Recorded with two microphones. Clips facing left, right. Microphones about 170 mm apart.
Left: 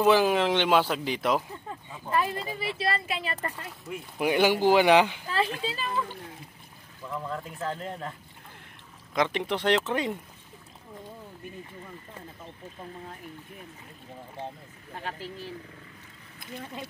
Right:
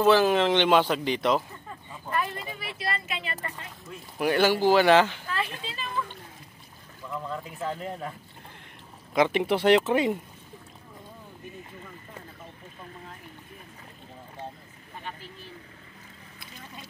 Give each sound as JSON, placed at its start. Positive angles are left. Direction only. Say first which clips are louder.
{"t": 0.0, "sound": "speech", "louder": "right 1 dB", "side_deg": 10}
{"t": 2.6, "sound": "speech", "louder": "left 4 dB", "side_deg": 30}
{"t": 3.9, "sound": "speech", "louder": "even", "side_deg": 15}
{"t": 5.3, "sound": "speech", "louder": "left 4 dB", "side_deg": 35}
{"t": 7.2, "sound": "speech", "louder": "right 1 dB", "side_deg": -5}
{"t": 9.1, "sound": "speech", "louder": "right 4 dB", "side_deg": -5}